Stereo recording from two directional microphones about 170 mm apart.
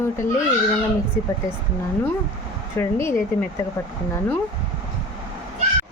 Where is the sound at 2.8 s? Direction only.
15° left (ahead or behind).